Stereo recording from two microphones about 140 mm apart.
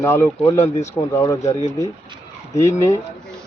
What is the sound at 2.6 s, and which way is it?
Speech, 20° left (ahead or behind).